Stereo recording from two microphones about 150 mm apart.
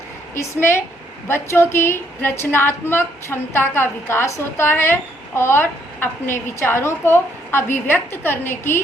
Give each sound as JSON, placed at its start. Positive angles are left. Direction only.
{"t": 0.3, "sound": "a woman's voice", "side_deg": 15}